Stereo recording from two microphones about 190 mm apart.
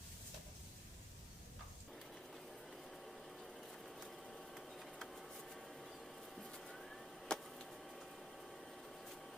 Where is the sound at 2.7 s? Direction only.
Centre (ahead or behind).